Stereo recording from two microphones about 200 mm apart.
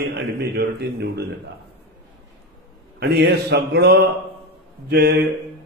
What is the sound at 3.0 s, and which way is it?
A man's voice, 55° right (ahead or behind).